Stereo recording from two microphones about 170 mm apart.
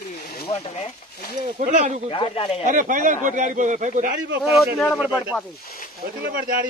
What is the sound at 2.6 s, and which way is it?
Speech, 50° right (ahead or behind).